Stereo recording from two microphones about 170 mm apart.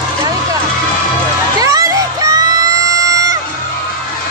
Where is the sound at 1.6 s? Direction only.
20° right (ahead or behind).